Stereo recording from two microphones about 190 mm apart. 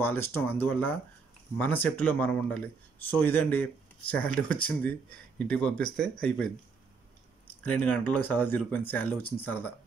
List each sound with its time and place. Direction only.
0.0 s speech: 10° left (ahead or behind)
7.6 s speech: 5° left (ahead or behind)